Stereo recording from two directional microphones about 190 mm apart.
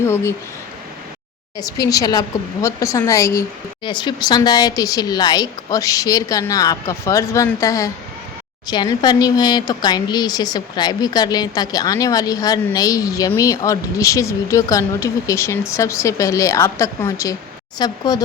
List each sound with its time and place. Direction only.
0.0 s speech: 15° left (ahead or behind)
1.5 s speech: 20° left (ahead or behind)